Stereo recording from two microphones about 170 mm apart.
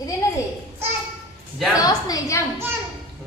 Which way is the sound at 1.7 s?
20° left (ahead or behind).